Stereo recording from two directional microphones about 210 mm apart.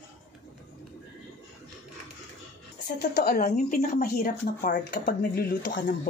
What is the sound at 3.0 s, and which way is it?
Speech, 50° left (ahead or behind).